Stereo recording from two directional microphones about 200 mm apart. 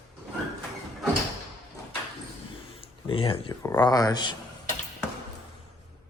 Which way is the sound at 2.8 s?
25° left (ahead or behind).